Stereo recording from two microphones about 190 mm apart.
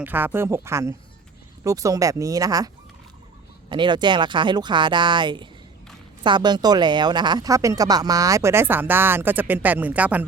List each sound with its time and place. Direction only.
0.0 s speech: 10° right (ahead or behind)
3.7 s speech: 25° right (ahead or behind); by 10.2 s 10° right (ahead or behind)